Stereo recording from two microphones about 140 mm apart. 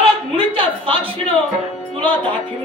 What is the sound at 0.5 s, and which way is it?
Speech, 40° right (ahead or behind).